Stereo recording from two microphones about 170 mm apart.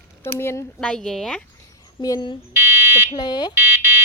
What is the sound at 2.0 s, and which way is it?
Speech, 25° left (ahead or behind).